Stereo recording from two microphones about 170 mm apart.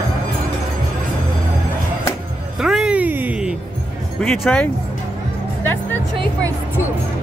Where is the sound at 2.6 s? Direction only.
5° right (ahead or behind).